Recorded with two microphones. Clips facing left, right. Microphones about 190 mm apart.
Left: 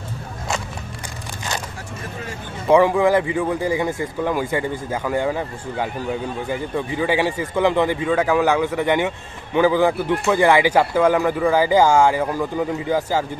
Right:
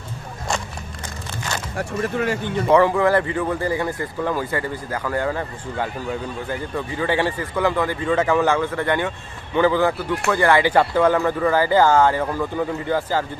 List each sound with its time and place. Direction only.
1.8 s speech: 70° right (ahead or behind)
2.7 s speech: 10° left (ahead or behind)
8.1 s speech: 5° left (ahead or behind)